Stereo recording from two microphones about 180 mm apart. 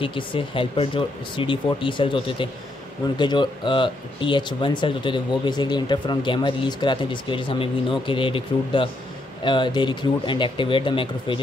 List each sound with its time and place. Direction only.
0.0 s speech: 30° left (ahead or behind)